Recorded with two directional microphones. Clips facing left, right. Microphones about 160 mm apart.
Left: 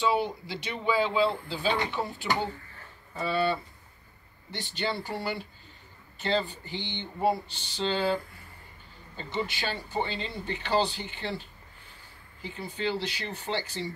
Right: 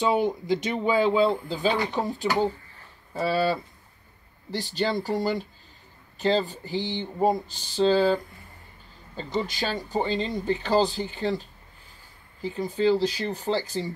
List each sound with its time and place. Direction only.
0.0 s speech: 45° right (ahead or behind)